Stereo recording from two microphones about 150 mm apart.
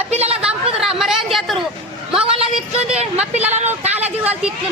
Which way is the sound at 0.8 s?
5° right (ahead or behind).